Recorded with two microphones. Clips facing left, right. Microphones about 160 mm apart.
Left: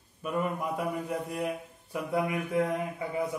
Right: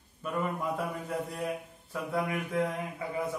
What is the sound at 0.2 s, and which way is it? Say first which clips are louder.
A man's voice: left 2 dB; 10° left (ahead or behind).